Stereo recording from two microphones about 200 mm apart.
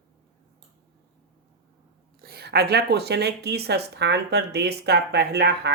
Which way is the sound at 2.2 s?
50° right (ahead or behind).